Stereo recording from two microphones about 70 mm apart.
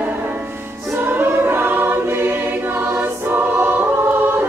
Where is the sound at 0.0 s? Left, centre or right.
Right.